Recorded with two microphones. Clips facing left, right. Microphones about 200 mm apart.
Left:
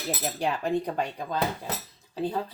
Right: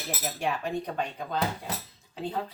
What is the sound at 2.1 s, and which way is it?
Speech, 35° left (ahead or behind).